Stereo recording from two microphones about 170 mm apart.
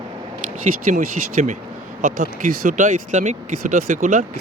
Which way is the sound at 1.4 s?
45° right (ahead or behind).